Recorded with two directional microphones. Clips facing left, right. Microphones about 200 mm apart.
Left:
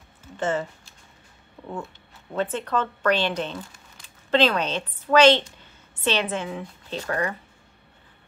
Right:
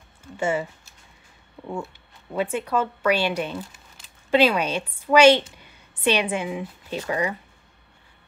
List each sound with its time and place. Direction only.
0.4 s a woman's voice: 10° right (ahead or behind)